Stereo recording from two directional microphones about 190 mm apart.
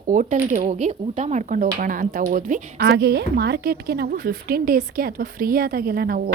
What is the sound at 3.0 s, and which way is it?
A woman's voice, 60° right (ahead or behind).